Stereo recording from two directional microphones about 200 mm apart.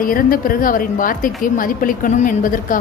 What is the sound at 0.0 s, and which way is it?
A woman's voice, 45° left (ahead or behind).